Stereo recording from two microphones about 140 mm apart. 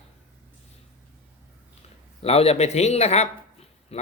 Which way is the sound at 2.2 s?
45° left (ahead or behind).